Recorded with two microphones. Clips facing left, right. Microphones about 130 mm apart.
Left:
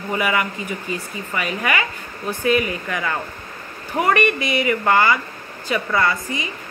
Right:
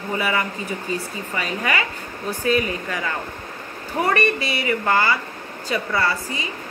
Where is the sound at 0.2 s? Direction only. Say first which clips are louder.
Left 3 dB; 35° right (ahead or behind).